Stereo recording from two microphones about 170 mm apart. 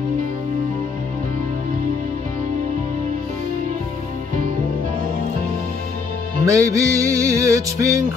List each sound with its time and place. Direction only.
6.4 s music: 20° right (ahead or behind)